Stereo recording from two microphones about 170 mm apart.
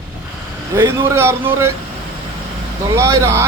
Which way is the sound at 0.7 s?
15° right (ahead or behind).